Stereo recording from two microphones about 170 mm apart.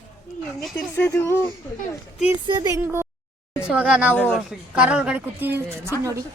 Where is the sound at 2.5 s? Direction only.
25° right (ahead or behind).